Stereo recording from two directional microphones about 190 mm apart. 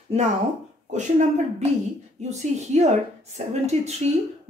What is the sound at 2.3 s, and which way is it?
Speech, 35° right (ahead or behind).